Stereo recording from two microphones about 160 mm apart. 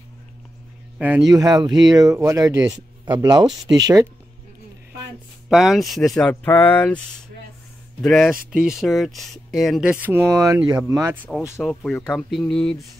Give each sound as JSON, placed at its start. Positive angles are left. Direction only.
{"t": 0.9, "sound": "speech", "side_deg": -10}
{"t": 1.2, "sound": "speech", "side_deg": -25}
{"t": 5.5, "sound": "speech", "side_deg": 0}
{"t": 8.0, "sound": "speech", "side_deg": 0}
{"t": 11.2, "sound": "speech", "side_deg": 0}